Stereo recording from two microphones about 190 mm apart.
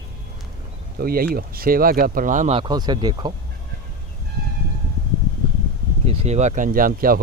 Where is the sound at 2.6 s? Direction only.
20° right (ahead or behind).